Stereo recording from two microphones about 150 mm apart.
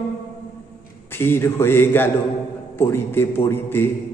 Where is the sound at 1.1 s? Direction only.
15° left (ahead or behind).